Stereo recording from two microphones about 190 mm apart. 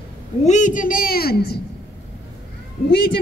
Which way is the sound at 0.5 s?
40° left (ahead or behind).